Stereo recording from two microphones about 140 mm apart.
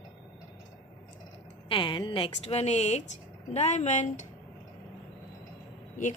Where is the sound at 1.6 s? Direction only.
35° left (ahead or behind); by 4.2 s 60° left (ahead or behind).